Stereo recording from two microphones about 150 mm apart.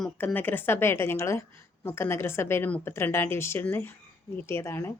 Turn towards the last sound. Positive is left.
turn(degrees=15)  # may be behind; listen again after turning